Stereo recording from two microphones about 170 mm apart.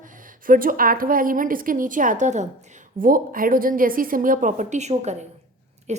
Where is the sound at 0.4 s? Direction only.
55° right (ahead or behind).